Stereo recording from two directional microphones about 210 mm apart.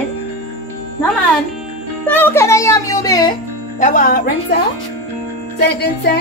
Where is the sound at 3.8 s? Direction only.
40° left (ahead or behind).